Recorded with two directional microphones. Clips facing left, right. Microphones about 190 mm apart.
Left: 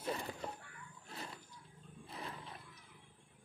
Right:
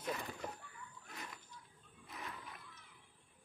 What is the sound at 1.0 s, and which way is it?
Wild animals, 30° left (ahead or behind).